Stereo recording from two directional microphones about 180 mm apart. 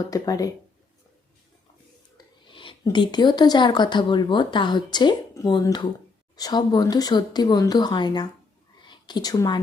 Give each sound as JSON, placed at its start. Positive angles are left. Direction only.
{"t": 0.1, "sound": "speech", "side_deg": 20}
{"t": 2.1, "sound": "speech", "side_deg": 25}
{"t": 8.8, "sound": "a sound", "side_deg": 25}